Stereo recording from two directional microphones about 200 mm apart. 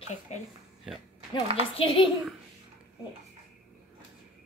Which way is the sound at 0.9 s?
5° right (ahead or behind).